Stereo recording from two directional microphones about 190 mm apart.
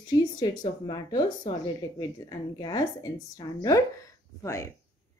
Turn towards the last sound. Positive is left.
turn(degrees=15)  # may be behind; listen again after turning